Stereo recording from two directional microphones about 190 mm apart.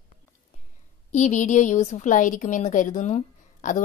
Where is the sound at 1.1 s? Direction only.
40° left (ahead or behind).